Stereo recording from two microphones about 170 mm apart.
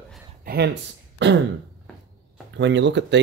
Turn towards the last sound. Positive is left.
turn(degrees=-90)